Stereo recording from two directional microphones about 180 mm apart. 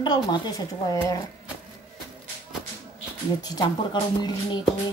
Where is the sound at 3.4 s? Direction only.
25° left (ahead or behind).